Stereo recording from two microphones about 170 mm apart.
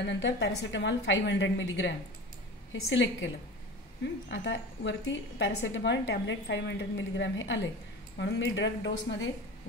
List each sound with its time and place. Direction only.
0.0 s a woman's voice: 90° left
4.3 s a woman's voice: 90° left